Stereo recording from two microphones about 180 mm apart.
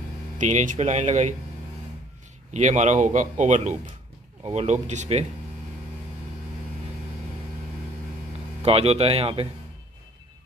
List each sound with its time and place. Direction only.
0.4 s speech: 40° right (ahead or behind)
2.5 s speech: 40° right (ahead or behind)
8.6 s speech: 35° right (ahead or behind)